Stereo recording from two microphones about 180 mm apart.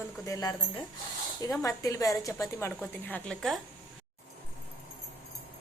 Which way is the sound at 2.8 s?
5° left (ahead or behind).